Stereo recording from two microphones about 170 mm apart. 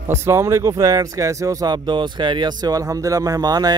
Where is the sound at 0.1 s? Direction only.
15° right (ahead or behind).